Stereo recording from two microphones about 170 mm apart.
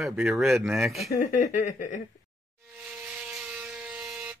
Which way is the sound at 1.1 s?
45° left (ahead or behind).